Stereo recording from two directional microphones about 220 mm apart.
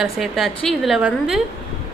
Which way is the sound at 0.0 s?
Centre (ahead or behind).